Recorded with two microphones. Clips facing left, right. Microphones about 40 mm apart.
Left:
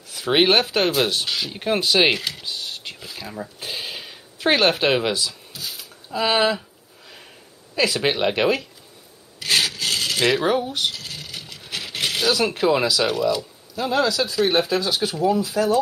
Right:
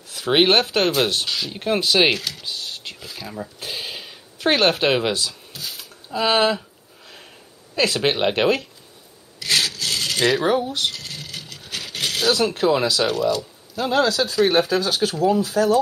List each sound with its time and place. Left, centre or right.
0.1 s speech: centre
1.2 s speech: centre
2.4 s a sound: centre
5.1 s speech: centre
7.7 s speech: centre
9.5 s rub: centre
9.9 s coin: centre
12.5 s speech: centre
13.9 s speech: right
15.0 s speech: centre
15.6 s speech: left